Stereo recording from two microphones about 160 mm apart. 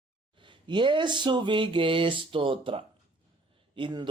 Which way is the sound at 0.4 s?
30° right (ahead or behind).